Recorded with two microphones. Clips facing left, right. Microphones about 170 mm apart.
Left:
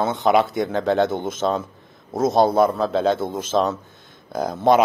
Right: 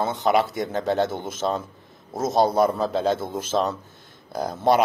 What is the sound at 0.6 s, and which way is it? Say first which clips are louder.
Speech: left 3 dB; 55° left (ahead or behind).